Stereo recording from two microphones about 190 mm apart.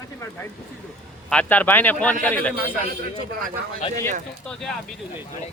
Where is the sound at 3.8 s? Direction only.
30° left (ahead or behind).